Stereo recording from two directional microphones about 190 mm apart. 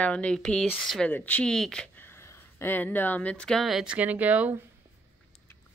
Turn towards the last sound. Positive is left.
turn(degrees=-10)  # may be behind; listen again after turning